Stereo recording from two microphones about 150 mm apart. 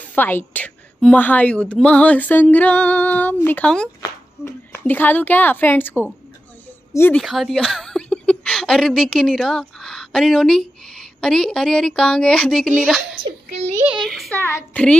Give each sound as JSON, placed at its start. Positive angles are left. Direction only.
{"t": 0.1, "sound": "a woman's voice", "side_deg": 10}
{"t": 4.0, "sound": "a woman's voice", "side_deg": 20}
{"t": 7.2, "sound": "a woman's voice", "side_deg": 0}
{"t": 13.2, "sound": "a sound", "side_deg": -45}
{"t": 13.8, "sound": "a sound", "side_deg": 0}
{"t": 14.3, "sound": "a woman's voice", "side_deg": 10}